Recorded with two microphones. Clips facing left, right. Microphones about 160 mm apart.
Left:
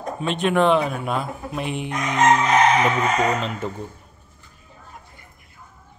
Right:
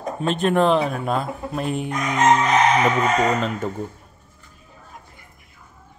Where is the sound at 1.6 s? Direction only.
40° right (ahead or behind).